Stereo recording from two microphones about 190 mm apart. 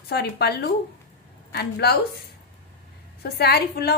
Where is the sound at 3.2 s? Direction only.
55° left (ahead or behind).